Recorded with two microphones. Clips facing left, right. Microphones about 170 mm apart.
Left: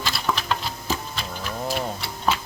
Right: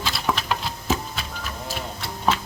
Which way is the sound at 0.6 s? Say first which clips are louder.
Right 3 dB; centre (ahead or behind).